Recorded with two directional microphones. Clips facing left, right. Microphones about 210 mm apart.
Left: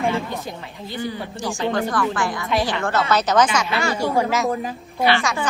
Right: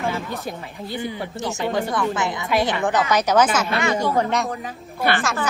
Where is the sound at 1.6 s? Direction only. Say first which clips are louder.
Left 1 dB; centre (ahead or behind).